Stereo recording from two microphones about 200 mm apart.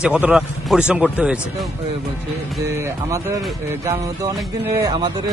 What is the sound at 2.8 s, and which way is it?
Speech, 15° right (ahead or behind).